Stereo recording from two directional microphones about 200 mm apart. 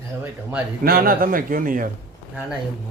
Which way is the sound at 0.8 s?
45° right (ahead or behind).